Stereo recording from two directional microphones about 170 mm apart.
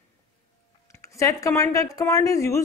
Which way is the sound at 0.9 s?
20° left (ahead or behind).